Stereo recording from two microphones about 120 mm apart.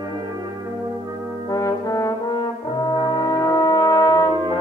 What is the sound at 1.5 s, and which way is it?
Brass instrument, 30° left (ahead or behind).